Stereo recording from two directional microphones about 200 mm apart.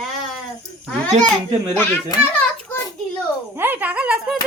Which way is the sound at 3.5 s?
10° right (ahead or behind).